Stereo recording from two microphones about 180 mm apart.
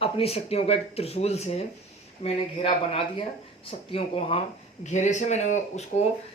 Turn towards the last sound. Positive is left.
turn(degrees=40)  # may be behind; listen again after turning